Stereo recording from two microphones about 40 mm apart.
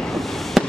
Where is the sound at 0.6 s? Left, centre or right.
Centre.